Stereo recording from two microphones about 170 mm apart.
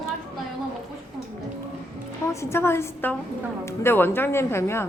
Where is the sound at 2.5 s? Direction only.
15° left (ahead or behind).